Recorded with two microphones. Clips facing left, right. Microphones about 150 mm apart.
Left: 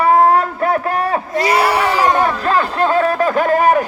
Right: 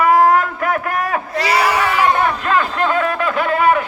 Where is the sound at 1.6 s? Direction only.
30° left (ahead or behind).